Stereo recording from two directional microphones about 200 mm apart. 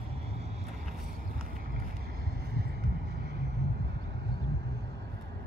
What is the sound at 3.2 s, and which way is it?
Vehicle, 55° right (ahead or behind).